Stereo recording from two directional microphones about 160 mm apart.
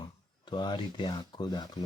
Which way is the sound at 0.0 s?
30° left (ahead or behind).